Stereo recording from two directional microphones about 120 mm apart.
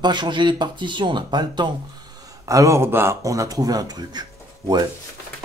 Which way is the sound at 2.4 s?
25° right (ahead or behind).